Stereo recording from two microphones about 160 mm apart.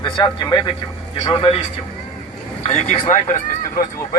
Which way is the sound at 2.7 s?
40° left (ahead or behind).